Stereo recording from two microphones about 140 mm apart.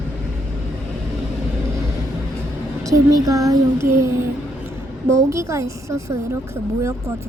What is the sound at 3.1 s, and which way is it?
Speech, 25° right (ahead or behind).